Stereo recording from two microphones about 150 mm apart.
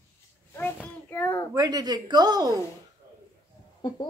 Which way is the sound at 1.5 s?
25° right (ahead or behind).